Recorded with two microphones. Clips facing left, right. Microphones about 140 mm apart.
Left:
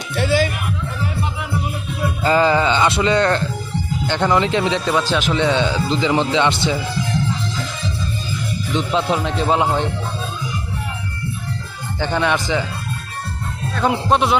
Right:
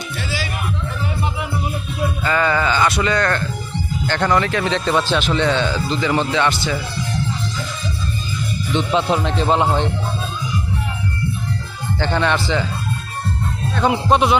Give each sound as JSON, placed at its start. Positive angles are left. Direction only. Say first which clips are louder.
{"t": 0.2, "sound": "music", "louder": "left 11 dB", "side_deg": 55}
{"t": 2.2, "sound": "speech", "louder": "left 4 dB", "side_deg": 30}
{"t": 4.0, "sound": "speech", "louder": "left 1 dB", "side_deg": 15}
{"t": 8.7, "sound": "speech", "louder": "right 1 dB", "side_deg": 0}
{"t": 11.9, "sound": "speech", "louder": "even", "side_deg": 10}
{"t": 13.7, "sound": "speech", "louder": "right 1 dB", "side_deg": 0}